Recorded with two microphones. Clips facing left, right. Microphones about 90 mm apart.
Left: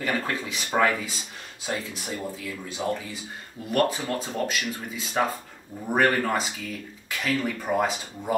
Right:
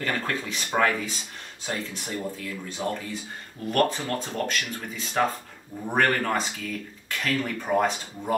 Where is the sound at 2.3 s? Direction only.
5° left (ahead or behind).